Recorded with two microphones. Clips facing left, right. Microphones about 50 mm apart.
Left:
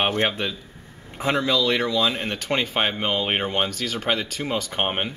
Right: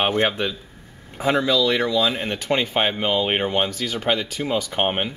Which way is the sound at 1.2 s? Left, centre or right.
Centre.